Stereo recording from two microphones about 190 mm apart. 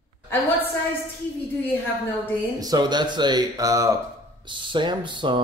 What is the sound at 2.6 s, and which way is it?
Speech, 20° right (ahead or behind).